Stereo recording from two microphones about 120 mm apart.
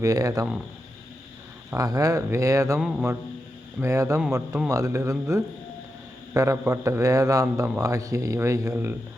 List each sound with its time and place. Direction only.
0.0 s a man's voice: 30° right (ahead or behind)
1.7 s a man's voice: 30° right (ahead or behind)